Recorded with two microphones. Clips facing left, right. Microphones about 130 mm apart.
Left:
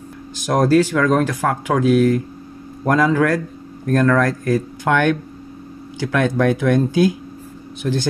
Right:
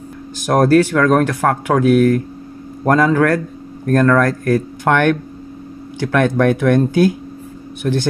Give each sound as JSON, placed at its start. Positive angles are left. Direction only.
{"t": 0.4, "sound": "speech", "side_deg": -55}